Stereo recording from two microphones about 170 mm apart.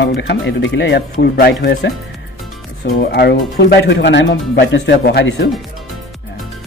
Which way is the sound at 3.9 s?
90° left.